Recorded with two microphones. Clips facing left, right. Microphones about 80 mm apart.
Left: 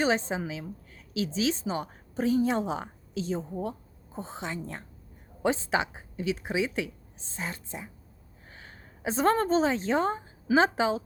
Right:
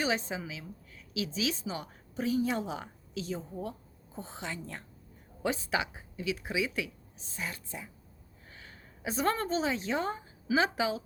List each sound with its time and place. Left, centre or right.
0.0 s a woman's voice: left